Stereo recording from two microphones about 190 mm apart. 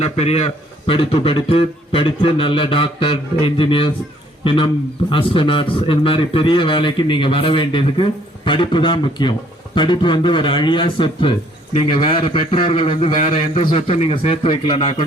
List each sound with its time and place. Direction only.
0.0 s a man's voice: 35° left (ahead or behind)